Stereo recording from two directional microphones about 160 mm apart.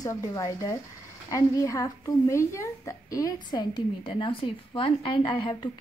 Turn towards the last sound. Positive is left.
turn(degrees=30)  # may be behind; listen again after turning